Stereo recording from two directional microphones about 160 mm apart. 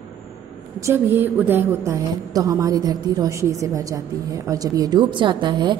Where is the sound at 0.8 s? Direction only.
15° right (ahead or behind).